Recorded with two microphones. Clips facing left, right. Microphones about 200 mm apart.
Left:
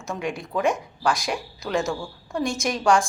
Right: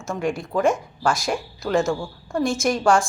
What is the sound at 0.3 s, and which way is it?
A woman's voice, centre (ahead or behind).